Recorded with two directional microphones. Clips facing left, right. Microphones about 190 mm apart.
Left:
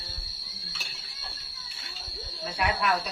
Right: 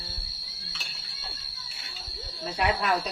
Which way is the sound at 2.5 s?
30° right (ahead or behind).